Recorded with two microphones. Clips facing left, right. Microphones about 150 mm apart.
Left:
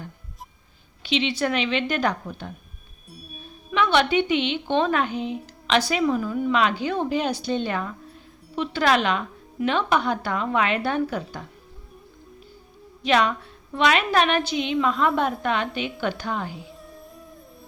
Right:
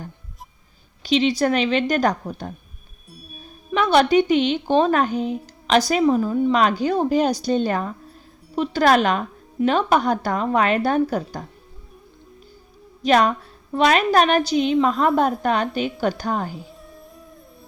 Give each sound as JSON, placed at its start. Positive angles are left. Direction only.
{"t": 1.0, "sound": "a woman's voice", "side_deg": -40}
{"t": 3.1, "sound": "music", "side_deg": 0}
{"t": 3.7, "sound": "a woman's voice", "side_deg": -40}
{"t": 13.0, "sound": "a woman's voice", "side_deg": -40}
{"t": 16.6, "sound": "music", "side_deg": 0}